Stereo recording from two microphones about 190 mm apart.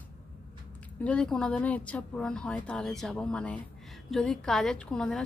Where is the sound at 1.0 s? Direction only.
5° left (ahead or behind).